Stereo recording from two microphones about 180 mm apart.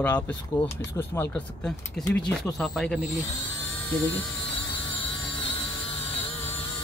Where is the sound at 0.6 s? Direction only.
25° left (ahead or behind).